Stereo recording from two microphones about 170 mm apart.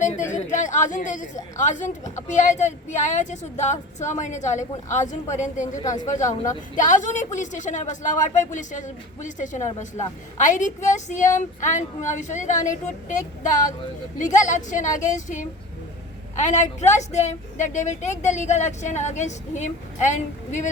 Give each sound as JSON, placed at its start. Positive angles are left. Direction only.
{"t": 0.0, "sound": "a sound", "side_deg": 45}
{"t": 1.5, "sound": "a woman's voice", "side_deg": 45}
{"t": 5.8, "sound": "speech", "side_deg": 20}
{"t": 6.1, "sound": "a woman's voice", "side_deg": 45}